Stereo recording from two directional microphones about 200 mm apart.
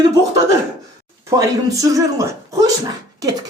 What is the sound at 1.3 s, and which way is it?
Speech, 15° right (ahead or behind).